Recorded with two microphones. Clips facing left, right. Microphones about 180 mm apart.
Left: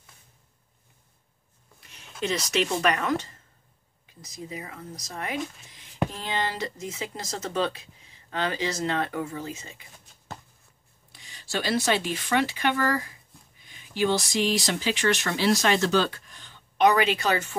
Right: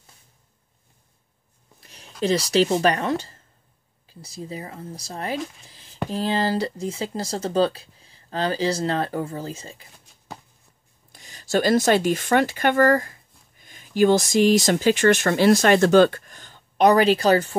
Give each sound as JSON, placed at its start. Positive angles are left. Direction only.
{"t": 1.8, "sound": "speech", "side_deg": -35}
{"t": 11.1, "sound": "speech", "side_deg": -45}